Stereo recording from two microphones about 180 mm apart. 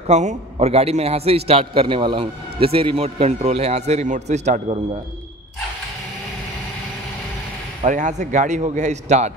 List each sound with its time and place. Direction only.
0.0 s a man's voice: 40° right (ahead or behind)
7.8 s a man's voice: 45° right (ahead or behind)